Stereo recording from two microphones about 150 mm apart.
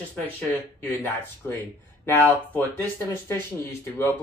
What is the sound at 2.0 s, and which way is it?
Speech, 10° left (ahead or behind).